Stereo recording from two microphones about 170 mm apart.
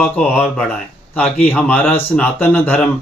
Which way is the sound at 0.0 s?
5° left (ahead or behind).